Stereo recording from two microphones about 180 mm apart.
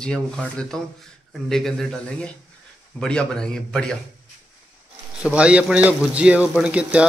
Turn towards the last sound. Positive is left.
turn(degrees=-5)  # may be behind; listen again after turning